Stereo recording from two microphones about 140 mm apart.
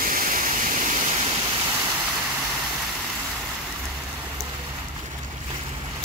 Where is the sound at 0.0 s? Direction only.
75° right (ahead or behind).